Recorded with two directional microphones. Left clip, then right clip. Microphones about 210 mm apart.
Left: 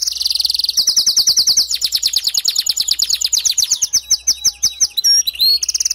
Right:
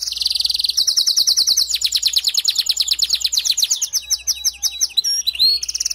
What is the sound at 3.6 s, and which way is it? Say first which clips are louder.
Chirp: left 1 dB; 5° right (ahead or behind).